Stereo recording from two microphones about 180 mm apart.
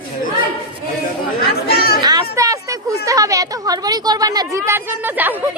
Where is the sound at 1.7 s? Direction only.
60° left (ahead or behind).